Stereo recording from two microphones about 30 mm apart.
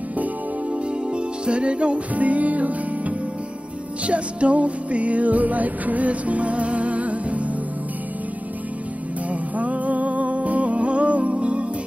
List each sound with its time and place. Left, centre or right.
1.1 s music: right
2.1 s music: right
4.1 s music: right
9.3 s music: right